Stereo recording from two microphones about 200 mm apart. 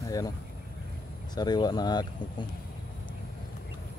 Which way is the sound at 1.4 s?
20° left (ahead or behind).